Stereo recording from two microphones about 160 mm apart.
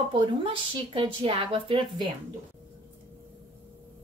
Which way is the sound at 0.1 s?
30° right (ahead or behind).